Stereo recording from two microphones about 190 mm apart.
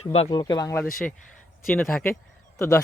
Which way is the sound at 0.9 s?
Centre (ahead or behind).